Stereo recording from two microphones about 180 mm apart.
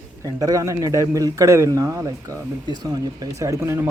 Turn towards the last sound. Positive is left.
turn(degrees=-15)  # may be behind; listen again after turning